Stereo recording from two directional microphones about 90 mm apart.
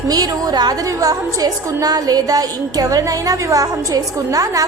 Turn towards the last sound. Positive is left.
turn(degrees=-40)  # may be behind; listen again after turning